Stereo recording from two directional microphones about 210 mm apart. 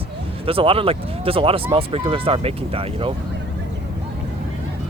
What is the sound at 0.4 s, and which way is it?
Speech, 25° right (ahead or behind).